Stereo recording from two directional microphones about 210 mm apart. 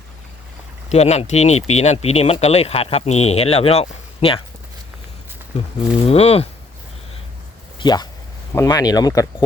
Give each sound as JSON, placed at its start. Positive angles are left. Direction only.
{"t": 0.9, "sound": "speech", "side_deg": 30}
{"t": 6.1, "sound": "speech", "side_deg": 30}
{"t": 7.8, "sound": "speech", "side_deg": 20}